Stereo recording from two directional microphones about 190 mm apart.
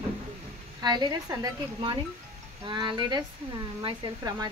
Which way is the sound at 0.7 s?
20° right (ahead or behind).